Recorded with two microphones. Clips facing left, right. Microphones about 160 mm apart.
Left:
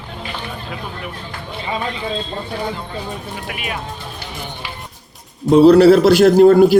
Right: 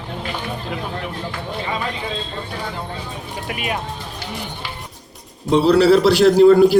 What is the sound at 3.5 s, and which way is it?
Speech, 40° right (ahead or behind).